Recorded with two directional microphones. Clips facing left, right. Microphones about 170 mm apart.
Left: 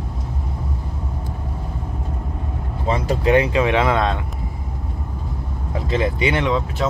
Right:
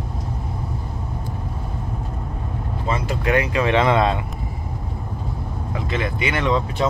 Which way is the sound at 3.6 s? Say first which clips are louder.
Even; 10° left (ahead or behind).